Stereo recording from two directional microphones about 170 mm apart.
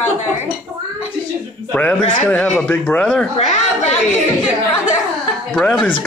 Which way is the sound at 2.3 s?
5° left (ahead or behind).